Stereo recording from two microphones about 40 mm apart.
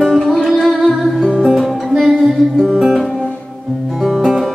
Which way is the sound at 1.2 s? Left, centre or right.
Centre.